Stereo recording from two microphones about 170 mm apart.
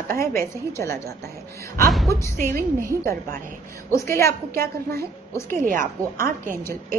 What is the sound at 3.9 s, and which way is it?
Speech, 15° left (ahead or behind).